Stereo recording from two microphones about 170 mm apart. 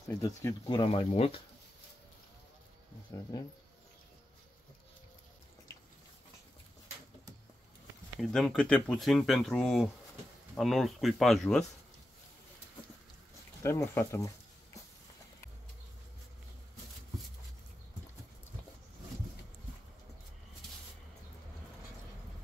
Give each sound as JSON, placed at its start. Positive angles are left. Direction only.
{"t": 0.1, "sound": "speech", "side_deg": 15}
{"t": 8.2, "sound": "speech", "side_deg": 5}
{"t": 13.6, "sound": "speech", "side_deg": 15}